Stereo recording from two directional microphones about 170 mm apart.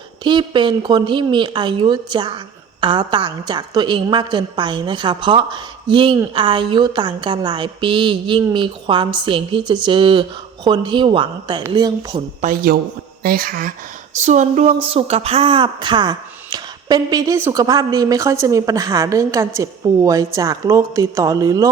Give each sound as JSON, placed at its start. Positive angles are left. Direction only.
{"t": 0.3, "sound": "speech", "side_deg": -30}
{"t": 12.4, "sound": "speech", "side_deg": -55}
{"t": 14.2, "sound": "speech", "side_deg": -45}